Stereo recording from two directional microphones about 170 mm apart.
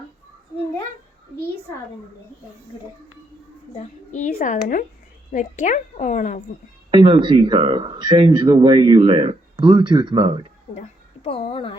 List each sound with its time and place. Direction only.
3.8 s a woman's voice: 45° left (ahead or behind)
6.9 s speech: 30° right (ahead or behind)
10.8 s a woman's voice: 35° left (ahead or behind)